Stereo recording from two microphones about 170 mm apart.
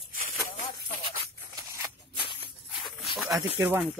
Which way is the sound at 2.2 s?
30° left (ahead or behind).